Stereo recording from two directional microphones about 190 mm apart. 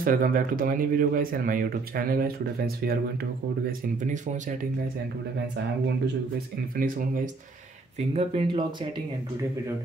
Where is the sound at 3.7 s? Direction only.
40° right (ahead or behind).